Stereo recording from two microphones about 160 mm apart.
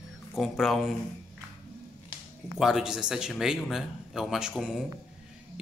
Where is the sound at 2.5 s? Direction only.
Centre (ahead or behind).